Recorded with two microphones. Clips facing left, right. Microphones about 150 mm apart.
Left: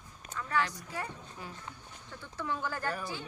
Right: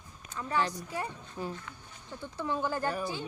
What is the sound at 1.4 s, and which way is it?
Speech, 30° right (ahead or behind).